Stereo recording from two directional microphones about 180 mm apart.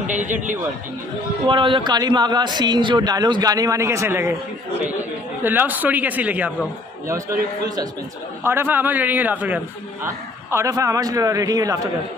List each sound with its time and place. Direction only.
0.0 s a man's voice: 45° right (ahead or behind)
1.5 s a man's voice: 25° right (ahead or behind)
5.4 s a man's voice: 10° right (ahead or behind)
7.6 s a man's voice: 20° right (ahead or behind)